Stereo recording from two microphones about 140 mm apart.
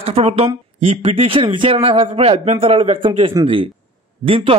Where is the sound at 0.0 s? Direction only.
45° right (ahead or behind).